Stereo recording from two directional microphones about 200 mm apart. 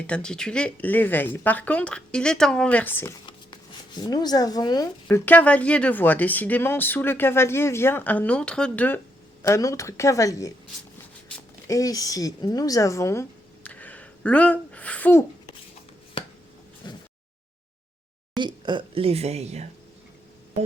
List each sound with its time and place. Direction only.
0.1 s speech: 5° left (ahead or behind)
3.2 s speech: 20° left (ahead or behind)
11.7 s a woman's voice: 15° left (ahead or behind)
16.8 s a sound: 20° left (ahead or behind)
18.3 s a woman's voice: 25° right (ahead or behind)